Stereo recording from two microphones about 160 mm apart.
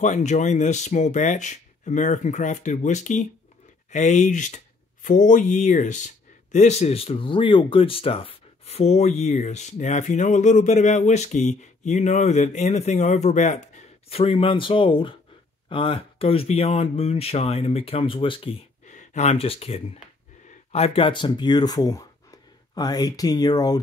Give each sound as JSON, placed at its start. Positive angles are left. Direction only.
{"t": 0.0, "sound": "speech", "side_deg": 50}